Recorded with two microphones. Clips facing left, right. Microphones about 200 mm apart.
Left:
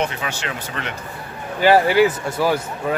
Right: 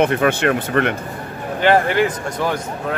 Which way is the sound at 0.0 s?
55° right (ahead or behind).